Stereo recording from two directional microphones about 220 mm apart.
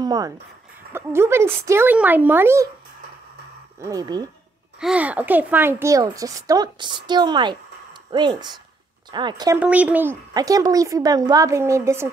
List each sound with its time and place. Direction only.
0.0 s speech: 15° right (ahead or behind)
3.8 s speech: 15° right (ahead or behind)
4.7 s speech: 5° right (ahead or behind)
9.6 s speech: 5° right (ahead or behind)